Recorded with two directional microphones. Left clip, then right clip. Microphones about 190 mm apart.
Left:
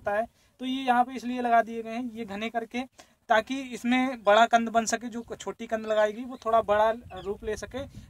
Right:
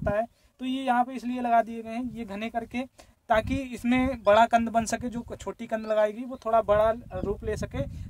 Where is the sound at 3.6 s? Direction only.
50° right (ahead or behind).